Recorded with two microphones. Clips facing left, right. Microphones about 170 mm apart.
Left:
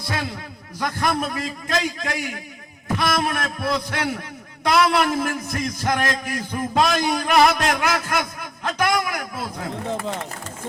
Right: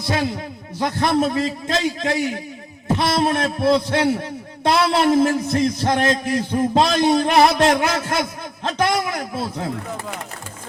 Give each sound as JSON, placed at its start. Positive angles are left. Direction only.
{"t": 0.8, "sound": "a man's voice", "side_deg": -25}